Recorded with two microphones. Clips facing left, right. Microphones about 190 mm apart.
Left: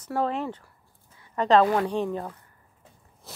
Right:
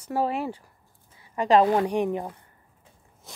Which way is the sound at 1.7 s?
15° right (ahead or behind).